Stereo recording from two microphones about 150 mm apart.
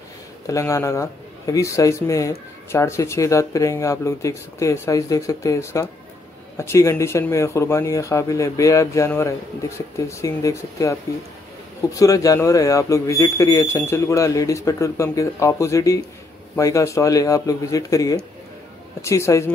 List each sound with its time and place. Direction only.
0.5 s speech: 20° left (ahead or behind)